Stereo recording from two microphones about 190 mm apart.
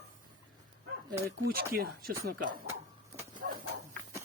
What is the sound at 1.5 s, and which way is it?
Speech, 50° right (ahead or behind).